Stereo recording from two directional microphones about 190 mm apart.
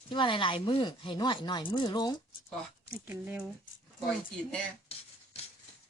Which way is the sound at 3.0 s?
10° right (ahead or behind).